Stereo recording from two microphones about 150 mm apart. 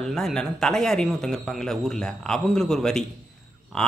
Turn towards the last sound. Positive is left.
turn(degrees=5)  # may be behind; listen again after turning